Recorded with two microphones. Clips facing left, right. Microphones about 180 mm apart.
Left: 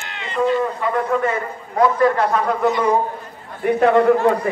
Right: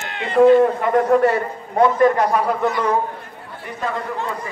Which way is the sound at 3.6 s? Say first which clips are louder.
Left 13 dB; 65° left (ahead or behind).